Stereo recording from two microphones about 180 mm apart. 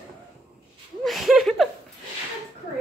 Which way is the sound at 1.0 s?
Centre (ahead or behind).